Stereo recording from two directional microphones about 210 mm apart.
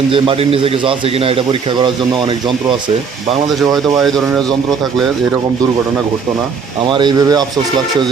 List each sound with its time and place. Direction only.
0.1 s a man's voice: 25° right (ahead or behind)
3.9 s speech: centre (ahead or behind)
6.8 s a man's voice: 20° right (ahead or behind)